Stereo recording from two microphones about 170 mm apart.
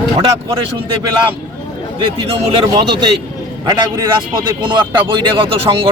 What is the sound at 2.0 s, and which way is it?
A man's voice, 30° right (ahead or behind).